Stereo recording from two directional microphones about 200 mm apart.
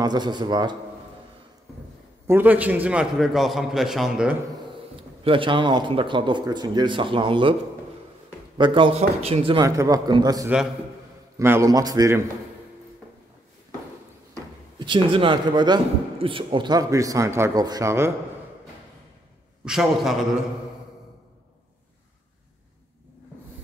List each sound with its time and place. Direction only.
0.0 s a man's voice: 20° right (ahead or behind)
2.2 s a man's voice: 10° right (ahead or behind)
5.2 s a man's voice: 25° right (ahead or behind)
8.5 s a man's voice: 25° right (ahead or behind)
14.8 s a man's voice: 25° right (ahead or behind)
19.6 s a man's voice: 5° right (ahead or behind)